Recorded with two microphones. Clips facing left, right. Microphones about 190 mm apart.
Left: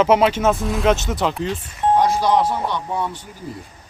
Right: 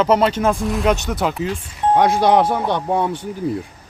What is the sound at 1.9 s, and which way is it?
Speech, 65° right (ahead or behind).